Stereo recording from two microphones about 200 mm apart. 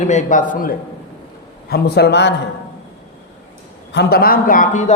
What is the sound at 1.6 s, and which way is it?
Speech, 50° left (ahead or behind).